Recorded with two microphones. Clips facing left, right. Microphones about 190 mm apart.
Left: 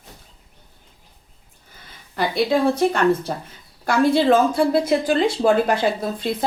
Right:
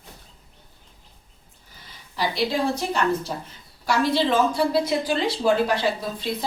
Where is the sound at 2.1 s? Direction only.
55° left (ahead or behind).